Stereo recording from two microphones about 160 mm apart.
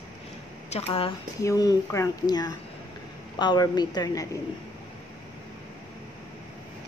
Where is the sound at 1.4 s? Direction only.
20° left (ahead or behind).